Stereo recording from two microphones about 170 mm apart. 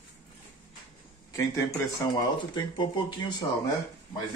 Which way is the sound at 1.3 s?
15° left (ahead or behind).